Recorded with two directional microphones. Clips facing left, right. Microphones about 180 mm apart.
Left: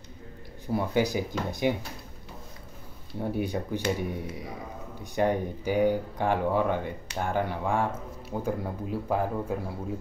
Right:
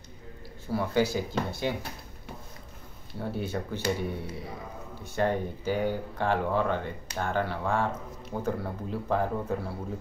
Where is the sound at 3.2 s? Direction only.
15° left (ahead or behind).